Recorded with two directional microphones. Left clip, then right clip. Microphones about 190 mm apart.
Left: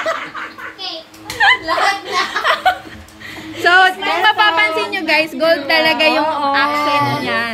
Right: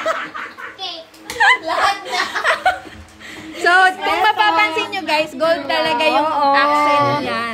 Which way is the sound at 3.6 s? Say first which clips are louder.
Left 2 dB; 5° right (ahead or behind).